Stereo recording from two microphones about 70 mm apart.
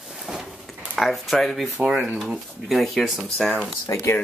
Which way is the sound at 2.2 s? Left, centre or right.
Centre.